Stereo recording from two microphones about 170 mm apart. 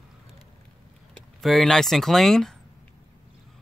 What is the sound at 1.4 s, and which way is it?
A man's voice, centre (ahead or behind).